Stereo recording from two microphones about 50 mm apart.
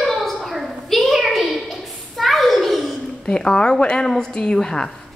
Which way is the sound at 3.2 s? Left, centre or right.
Centre.